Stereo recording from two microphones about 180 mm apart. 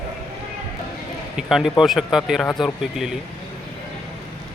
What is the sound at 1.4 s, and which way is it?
Speech, centre (ahead or behind).